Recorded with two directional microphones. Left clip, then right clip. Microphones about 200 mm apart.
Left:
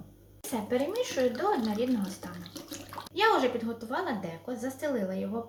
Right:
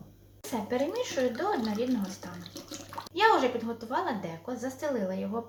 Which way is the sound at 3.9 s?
10° right (ahead or behind).